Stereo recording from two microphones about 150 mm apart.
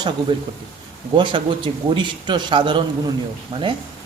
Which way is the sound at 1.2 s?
30° right (ahead or behind).